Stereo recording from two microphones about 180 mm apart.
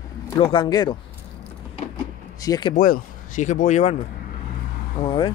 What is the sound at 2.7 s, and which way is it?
Speech, 45° left (ahead or behind).